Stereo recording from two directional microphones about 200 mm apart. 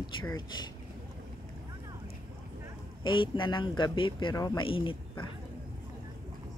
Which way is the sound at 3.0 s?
25° left (ahead or behind).